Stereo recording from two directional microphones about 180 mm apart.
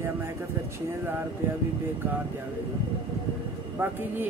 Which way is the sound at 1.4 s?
10° right (ahead or behind).